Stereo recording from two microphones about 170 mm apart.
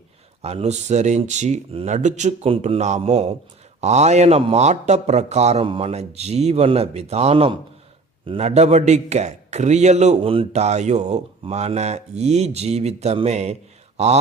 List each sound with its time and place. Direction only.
0.4 s a man's voice: 40° right (ahead or behind)